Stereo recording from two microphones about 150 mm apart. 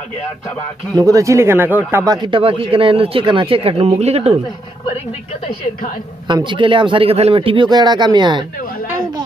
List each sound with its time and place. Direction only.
0.9 s speech: 25° right (ahead or behind)
2.2 s a man's voice: 35° right (ahead or behind)
6.2 s a man's voice: 30° right (ahead or behind)